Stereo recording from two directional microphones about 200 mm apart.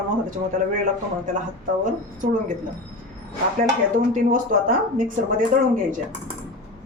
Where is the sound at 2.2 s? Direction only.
40° right (ahead or behind).